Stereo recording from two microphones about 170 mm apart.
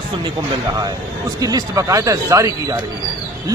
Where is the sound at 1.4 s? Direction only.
20° right (ahead or behind).